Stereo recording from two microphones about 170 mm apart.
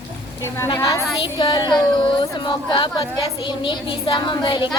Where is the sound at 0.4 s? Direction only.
15° left (ahead or behind).